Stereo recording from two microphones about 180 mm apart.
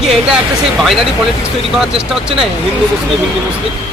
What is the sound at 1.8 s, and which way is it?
Speech, 5° right (ahead or behind).